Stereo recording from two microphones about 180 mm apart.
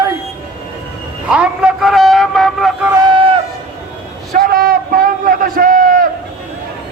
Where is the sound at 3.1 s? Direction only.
30° right (ahead or behind).